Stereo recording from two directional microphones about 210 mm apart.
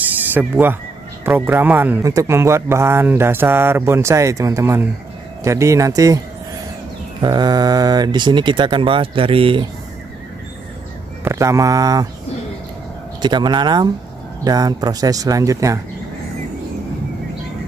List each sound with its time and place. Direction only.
0.2 s a man's voice: 10° right (ahead or behind); by 9.7 s 25° right (ahead or behind)
11.2 s a man's voice: 15° right (ahead or behind)
13.2 s a man's voice: 20° right (ahead or behind)